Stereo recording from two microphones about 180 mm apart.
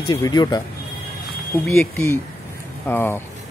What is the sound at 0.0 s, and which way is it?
Speech, 25° left (ahead or behind).